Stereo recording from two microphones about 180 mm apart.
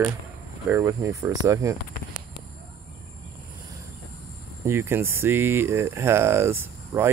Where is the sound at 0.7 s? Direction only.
15° right (ahead or behind).